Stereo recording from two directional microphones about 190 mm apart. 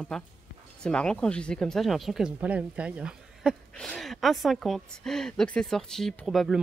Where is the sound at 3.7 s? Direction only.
5° left (ahead or behind).